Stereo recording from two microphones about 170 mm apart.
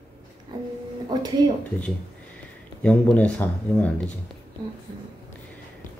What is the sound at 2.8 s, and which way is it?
Speech, 5° left (ahead or behind).